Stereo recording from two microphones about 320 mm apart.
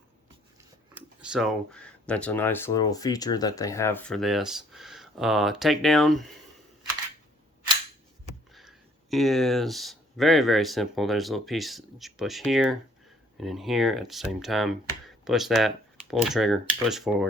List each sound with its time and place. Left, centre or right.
0.9 s speech: centre
8.5 s speech: centre